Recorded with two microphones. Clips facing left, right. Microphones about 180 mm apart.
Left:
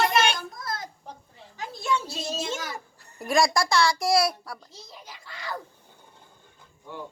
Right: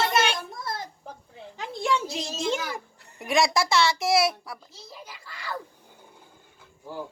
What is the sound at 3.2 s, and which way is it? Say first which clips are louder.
A child's voice: even; centre (ahead or behind).